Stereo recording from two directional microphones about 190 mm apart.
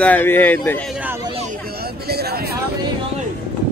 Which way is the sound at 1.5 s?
55° right (ahead or behind).